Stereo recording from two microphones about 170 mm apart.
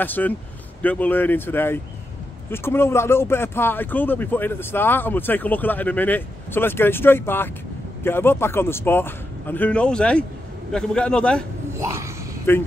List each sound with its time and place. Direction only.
0.0 s a man's voice: 10° left (ahead or behind)
11.7 s a sound: 15° right (ahead or behind)
12.5 s speech: 15° left (ahead or behind)